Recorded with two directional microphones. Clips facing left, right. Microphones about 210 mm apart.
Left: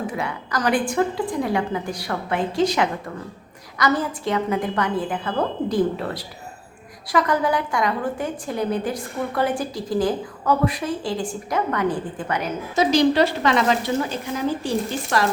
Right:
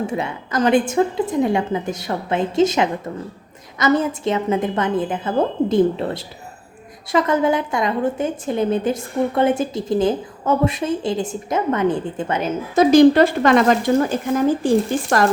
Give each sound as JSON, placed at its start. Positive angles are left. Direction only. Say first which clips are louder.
{"t": 0.1, "sound": "a woman's voice", "louder": "right 3 dB", "side_deg": -25}
{"t": 12.7, "sound": "speech", "louder": "right 7 dB", "side_deg": -50}